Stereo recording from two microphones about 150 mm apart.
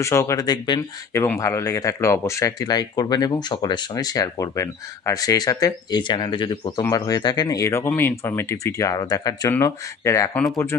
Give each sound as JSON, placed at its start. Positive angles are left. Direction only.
{"t": 0.0, "sound": "speech", "side_deg": 20}
{"t": 10.3, "sound": "speech", "side_deg": 0}